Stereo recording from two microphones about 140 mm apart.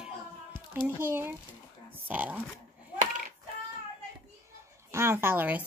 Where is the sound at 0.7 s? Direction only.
15° right (ahead or behind).